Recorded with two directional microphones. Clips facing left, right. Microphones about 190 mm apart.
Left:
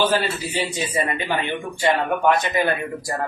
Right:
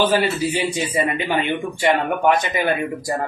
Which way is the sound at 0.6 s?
15° right (ahead or behind).